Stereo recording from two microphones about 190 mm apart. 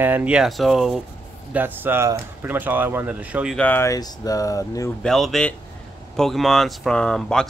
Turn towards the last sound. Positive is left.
turn(degrees=5)  # may be behind; listen again after turning